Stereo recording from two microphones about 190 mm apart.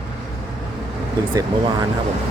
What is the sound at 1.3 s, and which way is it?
Speech, 20° right (ahead or behind).